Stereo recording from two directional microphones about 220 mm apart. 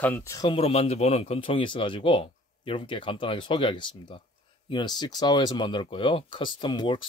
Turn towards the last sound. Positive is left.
turn(degrees=20)  # may be behind; listen again after turning